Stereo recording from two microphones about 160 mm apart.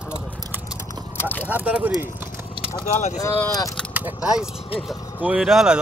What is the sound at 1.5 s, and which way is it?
Speech, 10° right (ahead or behind).